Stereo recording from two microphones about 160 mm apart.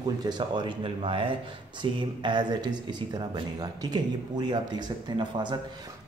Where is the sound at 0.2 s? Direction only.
30° right (ahead or behind).